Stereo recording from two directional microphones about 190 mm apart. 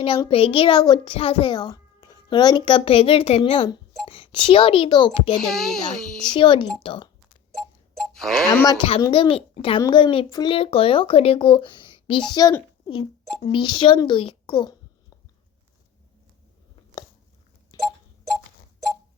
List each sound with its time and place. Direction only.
0.3 s speech: 30° left (ahead or behind)
5.4 s a child's voice: centre (ahead or behind)
6.3 s speech: 25° left (ahead or behind)
8.1 s speech: centre (ahead or behind)
8.6 s speech: 25° left (ahead or behind)
17.7 s a sound: 20° left (ahead or behind)